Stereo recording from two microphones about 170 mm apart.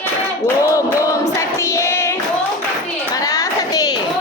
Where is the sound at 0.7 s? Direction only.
20° left (ahead or behind).